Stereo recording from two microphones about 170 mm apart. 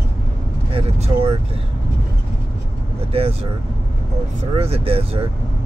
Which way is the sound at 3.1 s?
35° right (ahead or behind).